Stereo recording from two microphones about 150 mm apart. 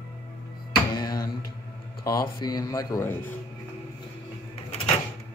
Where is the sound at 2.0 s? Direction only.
25° left (ahead or behind).